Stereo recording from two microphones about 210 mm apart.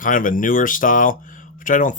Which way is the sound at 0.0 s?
40° left (ahead or behind).